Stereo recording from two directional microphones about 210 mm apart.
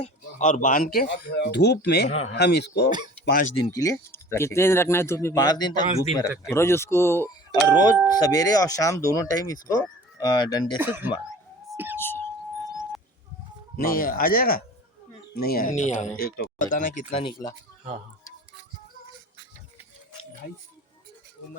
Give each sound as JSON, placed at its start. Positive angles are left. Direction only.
{"t": 0.0, "sound": "speech", "side_deg": 35}
{"t": 3.6, "sound": "speech", "side_deg": 15}
{"t": 10.8, "sound": "speech", "side_deg": -10}
{"t": 11.7, "sound": "whispering", "side_deg": -10}
{"t": 11.9, "sound": "a sound", "side_deg": 10}
{"t": 13.7, "sound": "speech", "side_deg": 40}